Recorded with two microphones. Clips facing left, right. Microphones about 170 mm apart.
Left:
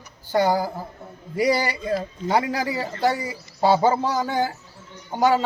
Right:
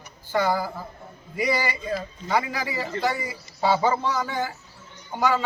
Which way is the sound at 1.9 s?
40° left (ahead or behind).